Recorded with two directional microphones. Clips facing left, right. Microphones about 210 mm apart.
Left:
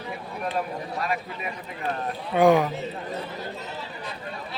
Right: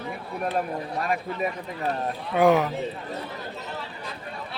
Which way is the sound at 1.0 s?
50° right (ahead or behind).